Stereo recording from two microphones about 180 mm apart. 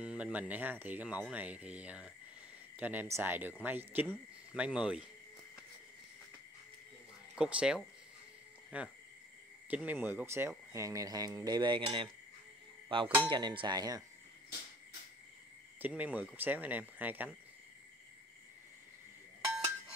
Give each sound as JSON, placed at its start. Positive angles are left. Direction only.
{"t": 0.0, "sound": "speech", "side_deg": -5}
{"t": 7.3, "sound": "speech", "side_deg": -5}
{"t": 10.7, "sound": "cutlery", "side_deg": -15}
{"t": 12.8, "sound": "a sound", "side_deg": -30}
{"t": 13.3, "sound": "cutlery", "side_deg": -25}
{"t": 15.8, "sound": "speech", "side_deg": -10}